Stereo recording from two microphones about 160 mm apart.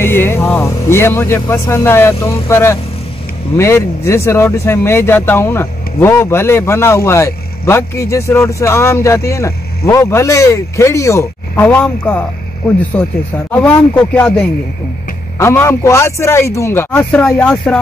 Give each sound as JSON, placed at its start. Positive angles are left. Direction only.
{"t": 0.0, "sound": "speech", "side_deg": 15}
{"t": 15.3, "sound": "speech", "side_deg": 15}